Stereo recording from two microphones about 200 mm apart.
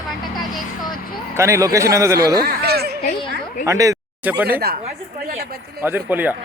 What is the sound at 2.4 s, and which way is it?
Speech, 50° right (ahead or behind).